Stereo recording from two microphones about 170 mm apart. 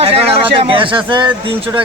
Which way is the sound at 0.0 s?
35° right (ahead or behind).